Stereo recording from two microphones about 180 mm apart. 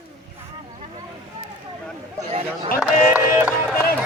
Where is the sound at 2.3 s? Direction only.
35° right (ahead or behind).